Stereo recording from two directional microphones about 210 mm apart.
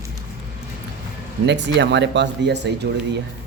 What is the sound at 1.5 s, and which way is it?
Speech, 55° right (ahead or behind).